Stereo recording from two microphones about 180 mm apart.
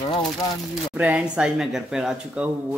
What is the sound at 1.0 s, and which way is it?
Speech, 5° right (ahead or behind).